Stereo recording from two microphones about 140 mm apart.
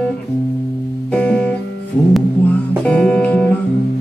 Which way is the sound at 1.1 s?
10° left (ahead or behind).